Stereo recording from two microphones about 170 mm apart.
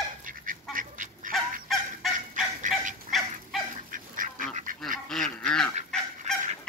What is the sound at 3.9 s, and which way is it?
Duck, 55° right (ahead or behind).